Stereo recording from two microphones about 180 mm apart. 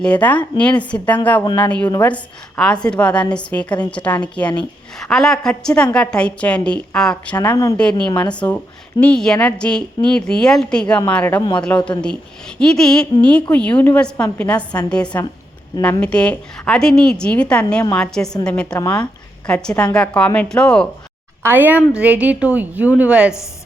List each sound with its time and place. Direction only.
0.0 s a woman's voice: 10° left (ahead or behind)
1.5 s speech: 25° left (ahead or behind)
1.9 s a woman's voice: 10° left (ahead or behind)
7.4 s a woman's voice: 20° left (ahead or behind)
7.8 s a woman's voice: 5° left (ahead or behind)
21.4 s a woman's voice: 10° right (ahead or behind)